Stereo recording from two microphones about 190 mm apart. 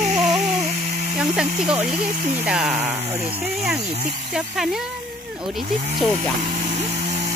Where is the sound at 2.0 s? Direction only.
45° right (ahead or behind).